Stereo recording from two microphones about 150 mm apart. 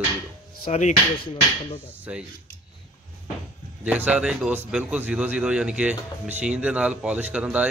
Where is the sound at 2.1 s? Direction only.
5° right (ahead or behind).